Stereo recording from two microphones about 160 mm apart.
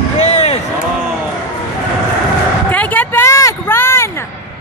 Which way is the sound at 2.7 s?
10° left (ahead or behind).